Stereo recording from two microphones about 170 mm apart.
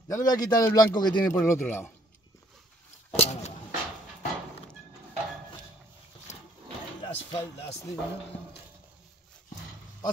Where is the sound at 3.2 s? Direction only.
40° left (ahead or behind).